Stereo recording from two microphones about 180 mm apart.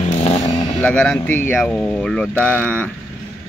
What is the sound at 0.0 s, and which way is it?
Vehicle, 35° left (ahead or behind).